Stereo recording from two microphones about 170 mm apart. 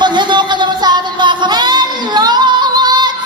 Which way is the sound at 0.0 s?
25° right (ahead or behind).